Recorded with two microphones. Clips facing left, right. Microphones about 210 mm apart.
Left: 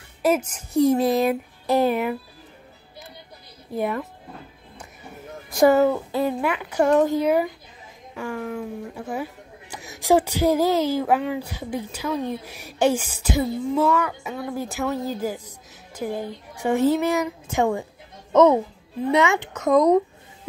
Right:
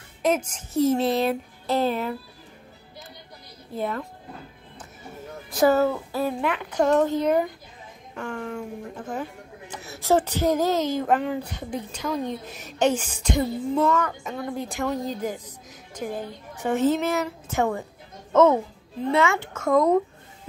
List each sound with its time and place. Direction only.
0.5 s speech: 10° left (ahead or behind)
3.7 s speech: 15° left (ahead or behind)
5.5 s speech: 15° left (ahead or behind)